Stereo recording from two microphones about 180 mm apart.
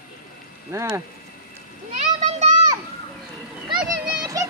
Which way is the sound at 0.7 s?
20° right (ahead or behind).